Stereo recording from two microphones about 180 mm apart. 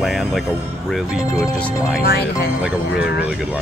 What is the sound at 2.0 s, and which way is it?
Speech, 60° left (ahead or behind).